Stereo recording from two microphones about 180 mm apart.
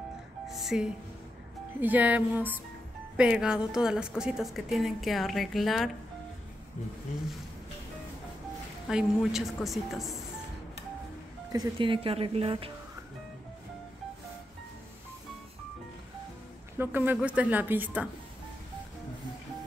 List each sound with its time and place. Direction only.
0.5 s music: centre (ahead or behind)
1.8 s a woman's voice: 10° right (ahead or behind)
8.8 s a woman's voice: 5° right (ahead or behind)
11.5 s speech: 25° right (ahead or behind)
16.7 s speech: 10° right (ahead or behind)